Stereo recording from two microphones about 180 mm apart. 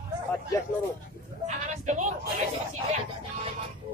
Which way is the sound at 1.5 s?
45° right (ahead or behind).